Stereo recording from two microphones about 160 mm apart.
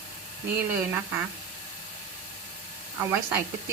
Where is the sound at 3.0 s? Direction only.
15° right (ahead or behind).